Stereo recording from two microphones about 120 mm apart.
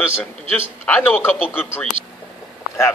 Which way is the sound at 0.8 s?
15° left (ahead or behind).